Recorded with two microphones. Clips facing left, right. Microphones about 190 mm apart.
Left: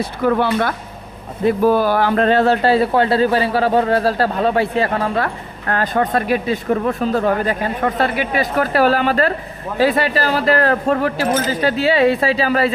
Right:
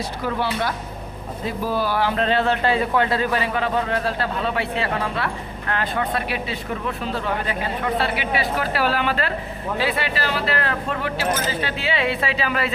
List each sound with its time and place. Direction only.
0.0 s speech: 55° left (ahead or behind); by 12.7 s 40° left (ahead or behind)